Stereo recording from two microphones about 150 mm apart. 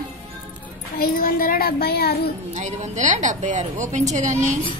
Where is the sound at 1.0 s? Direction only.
70° left (ahead or behind); by 2.2 s 90° left.